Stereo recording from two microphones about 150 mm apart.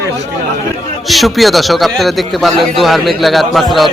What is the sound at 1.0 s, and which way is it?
A man's voice, centre (ahead or behind).